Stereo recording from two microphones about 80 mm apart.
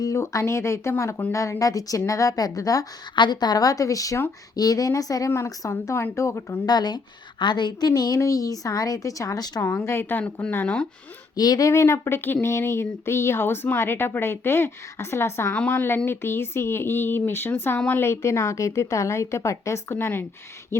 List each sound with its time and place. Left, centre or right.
0.0 s a woman's voice: left
3.2 s a woman's voice: left
6.7 s a woman's voice: left
9.6 s speech: left
11.3 s a woman's voice: left
11.7 s a woman's voice: left